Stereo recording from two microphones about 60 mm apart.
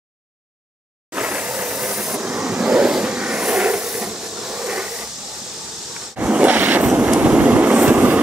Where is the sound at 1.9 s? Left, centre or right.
Centre.